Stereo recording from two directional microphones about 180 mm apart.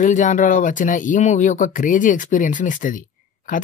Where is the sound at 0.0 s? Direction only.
40° left (ahead or behind).